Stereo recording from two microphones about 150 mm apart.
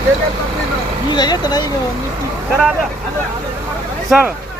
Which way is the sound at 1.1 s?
30° left (ahead or behind).